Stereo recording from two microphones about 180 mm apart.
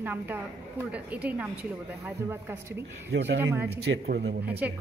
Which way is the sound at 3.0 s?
70° right (ahead or behind).